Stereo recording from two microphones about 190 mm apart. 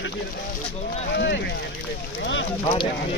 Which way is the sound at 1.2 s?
65° left (ahead or behind).